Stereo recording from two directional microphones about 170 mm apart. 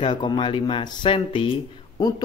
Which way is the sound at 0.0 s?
25° left (ahead or behind).